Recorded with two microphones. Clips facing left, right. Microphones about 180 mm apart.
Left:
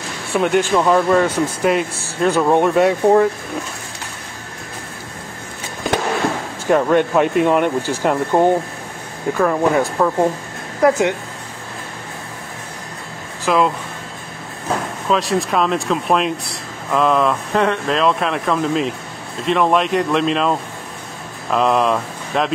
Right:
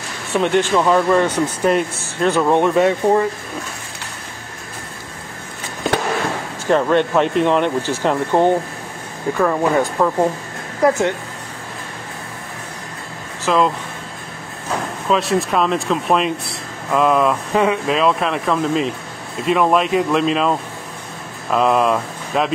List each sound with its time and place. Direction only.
0.3 s speech: 10° left (ahead or behind)
6.7 s speech: 10° left (ahead or behind)
10.8 s speech: 15° left (ahead or behind)
13.5 s speech: 5° left (ahead or behind)
15.0 s speech: centre (ahead or behind)